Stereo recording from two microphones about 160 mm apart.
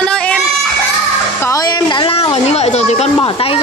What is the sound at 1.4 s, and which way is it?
A woman's voice, 20° left (ahead or behind).